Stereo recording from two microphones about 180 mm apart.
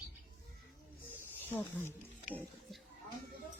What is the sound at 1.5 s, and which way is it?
Speech, 10° left (ahead or behind).